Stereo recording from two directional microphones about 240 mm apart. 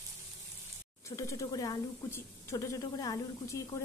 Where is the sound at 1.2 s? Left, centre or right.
Centre.